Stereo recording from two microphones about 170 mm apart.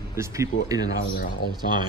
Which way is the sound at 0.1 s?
15° right (ahead or behind).